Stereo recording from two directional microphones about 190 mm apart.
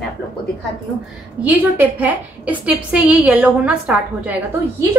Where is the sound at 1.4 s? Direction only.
10° right (ahead or behind).